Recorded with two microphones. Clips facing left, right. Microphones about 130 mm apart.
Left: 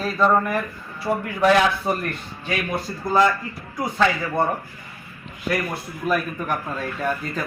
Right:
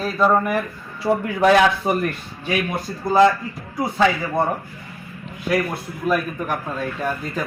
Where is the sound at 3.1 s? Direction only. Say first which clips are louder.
Right 4 dB; 20° right (ahead or behind).